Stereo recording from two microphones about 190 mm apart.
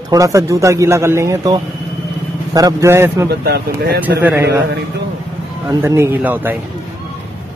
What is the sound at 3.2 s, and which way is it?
Speech, 55° right (ahead or behind).